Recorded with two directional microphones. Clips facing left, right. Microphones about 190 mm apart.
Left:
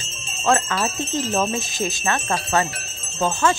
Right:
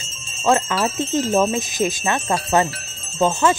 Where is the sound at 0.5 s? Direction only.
25° right (ahead or behind).